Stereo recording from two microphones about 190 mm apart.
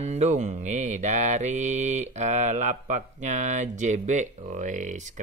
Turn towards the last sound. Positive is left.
turn(degrees=-40)  # may be behind; listen again after turning